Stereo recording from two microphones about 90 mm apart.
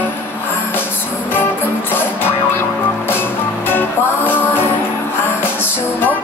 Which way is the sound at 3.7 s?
25° left (ahead or behind).